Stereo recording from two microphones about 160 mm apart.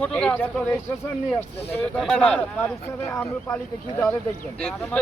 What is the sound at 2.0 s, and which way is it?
Speech, 5° left (ahead or behind).